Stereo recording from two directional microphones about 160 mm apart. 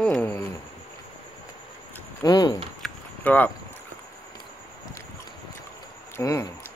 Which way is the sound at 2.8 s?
10° left (ahead or behind).